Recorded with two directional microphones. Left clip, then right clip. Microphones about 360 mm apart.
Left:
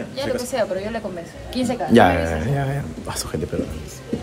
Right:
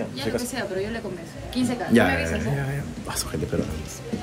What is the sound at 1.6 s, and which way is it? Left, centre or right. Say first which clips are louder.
Speech: left 3 dB; left.